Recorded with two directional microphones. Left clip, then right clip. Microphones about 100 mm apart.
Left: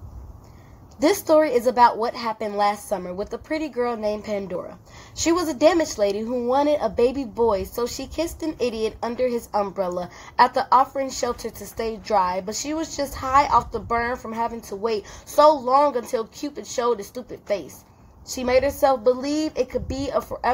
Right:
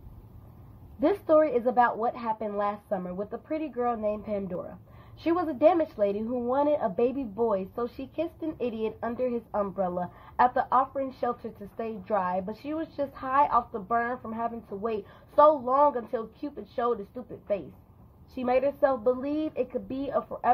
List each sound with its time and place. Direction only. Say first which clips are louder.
0.9 s speech: left 5 dB; 40° left (ahead or behind); by 14.5 s 25° left (ahead or behind)
14.9 s speech: left 7 dB; 40° left (ahead or behind)
18.3 s speech: left 6 dB; 40° left (ahead or behind)